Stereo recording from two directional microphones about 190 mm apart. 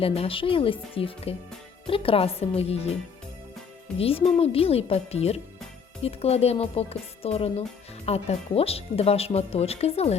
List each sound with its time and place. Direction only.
0.0 s speech: 30° left (ahead or behind)
3.9 s speech: 30° left (ahead or behind)